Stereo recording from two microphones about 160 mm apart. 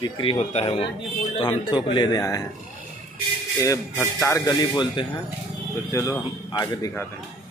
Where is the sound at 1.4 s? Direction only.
30° left (ahead or behind).